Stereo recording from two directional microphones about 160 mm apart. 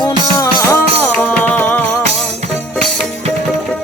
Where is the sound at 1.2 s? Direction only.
10° left (ahead or behind).